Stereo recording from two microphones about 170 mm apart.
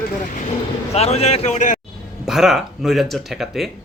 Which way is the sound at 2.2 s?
Centre (ahead or behind).